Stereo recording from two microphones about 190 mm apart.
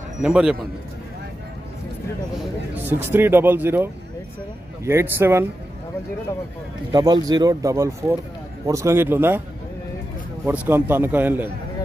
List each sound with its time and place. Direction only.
0.2 s a man's voice: 5° right (ahead or behind)
2.7 s speech: 10° right (ahead or behind)
6.9 s speech: 20° right (ahead or behind)
10.4 s speech: 10° right (ahead or behind)